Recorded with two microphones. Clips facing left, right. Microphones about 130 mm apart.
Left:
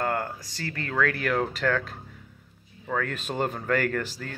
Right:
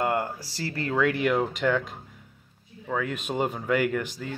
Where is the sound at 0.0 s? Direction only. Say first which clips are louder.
Right 2 dB; 25° right (ahead or behind).